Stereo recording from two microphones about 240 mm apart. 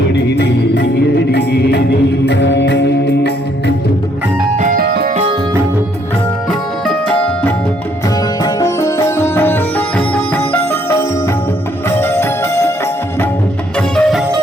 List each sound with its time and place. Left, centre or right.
0.1 s music: left
4.5 s music: right
6.5 s music: centre
11.9 s music: centre
13.7 s music: centre